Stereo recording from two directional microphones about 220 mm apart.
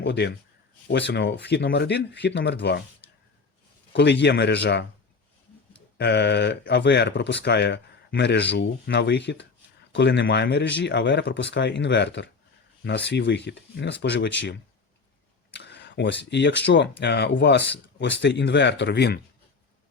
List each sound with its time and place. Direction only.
0.0 s speech: 50° left (ahead or behind)
3.9 s speech: 50° left (ahead or behind)
6.0 s speech: 50° left (ahead or behind)
15.5 s speech: 50° left (ahead or behind)